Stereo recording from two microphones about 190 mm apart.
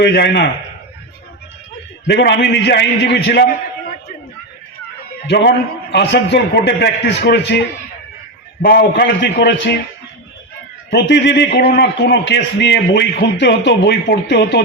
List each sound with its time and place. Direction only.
0.0 s a man's voice: 60° left (ahead or behind)
2.0 s a man's voice: 65° left (ahead or behind)
5.3 s a man's voice: 65° left (ahead or behind)
8.6 s a man's voice: 50° left (ahead or behind)
10.9 s a man's voice: 70° left (ahead or behind)